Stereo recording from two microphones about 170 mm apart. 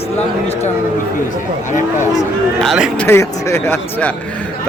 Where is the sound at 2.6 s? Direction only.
Centre (ahead or behind).